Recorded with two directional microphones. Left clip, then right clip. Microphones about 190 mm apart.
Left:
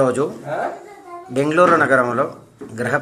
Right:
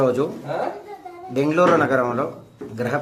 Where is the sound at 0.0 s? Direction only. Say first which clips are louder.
Left 2 dB; 15° left (ahead or behind).